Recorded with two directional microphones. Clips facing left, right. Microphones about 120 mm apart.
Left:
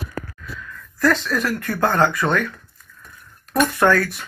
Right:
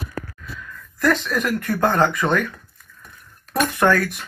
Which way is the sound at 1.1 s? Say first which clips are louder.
Even; 5° right (ahead or behind).